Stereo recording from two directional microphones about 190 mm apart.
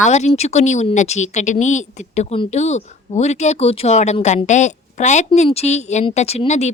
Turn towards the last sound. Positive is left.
turn(degrees=35)  # may be behind; listen again after turning